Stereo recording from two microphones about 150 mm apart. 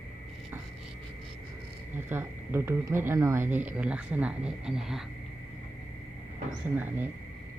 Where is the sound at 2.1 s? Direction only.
15° right (ahead or behind).